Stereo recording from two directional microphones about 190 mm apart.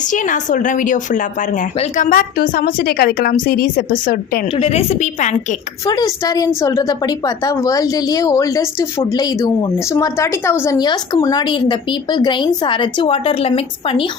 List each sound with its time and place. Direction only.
0.1 s a woman's voice: 40° left (ahead or behind)
4.5 s a woman's voice: 30° left (ahead or behind)
5.8 s a woman's voice: 20° left (ahead or behind)